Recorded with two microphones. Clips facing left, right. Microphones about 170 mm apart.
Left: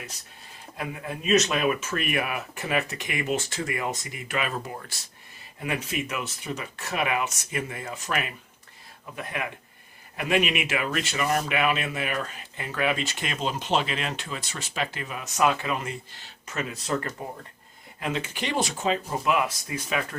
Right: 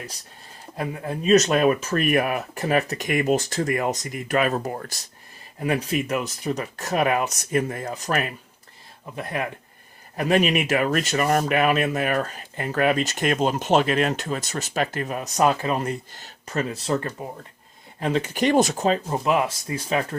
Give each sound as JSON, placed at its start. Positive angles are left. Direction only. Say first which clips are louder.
{"t": 0.8, "sound": "speech", "louder": "right 5 dB", "side_deg": -35}